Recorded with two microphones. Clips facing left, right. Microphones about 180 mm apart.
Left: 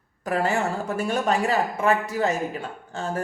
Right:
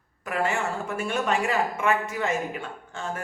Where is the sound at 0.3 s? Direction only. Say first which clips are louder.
Left 3 dB; 35° left (ahead or behind).